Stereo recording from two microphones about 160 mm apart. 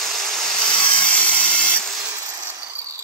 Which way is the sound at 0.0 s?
Centre (ahead or behind).